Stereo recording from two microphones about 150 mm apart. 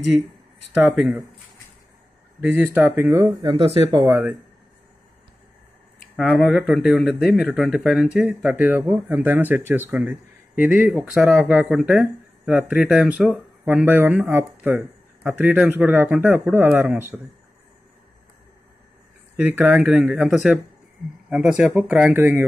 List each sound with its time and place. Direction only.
0.8 s speech: centre (ahead or behind)
2.4 s speech: 15° right (ahead or behind)
3.4 s speech: 40° right (ahead or behind)
4.0 s speech: 15° right (ahead or behind)
6.1 s speech: centre (ahead or behind)
19.3 s speech: 10° right (ahead or behind)